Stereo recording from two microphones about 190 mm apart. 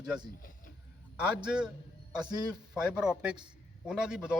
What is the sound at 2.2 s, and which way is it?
Speech, 20° right (ahead or behind).